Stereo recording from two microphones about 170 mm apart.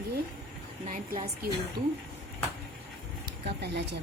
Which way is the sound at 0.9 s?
50° right (ahead or behind).